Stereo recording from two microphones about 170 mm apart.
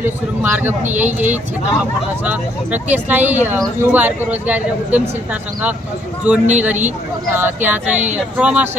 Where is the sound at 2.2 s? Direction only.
10° right (ahead or behind).